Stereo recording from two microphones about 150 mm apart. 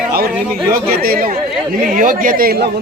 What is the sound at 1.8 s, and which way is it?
Speech, 65° right (ahead or behind).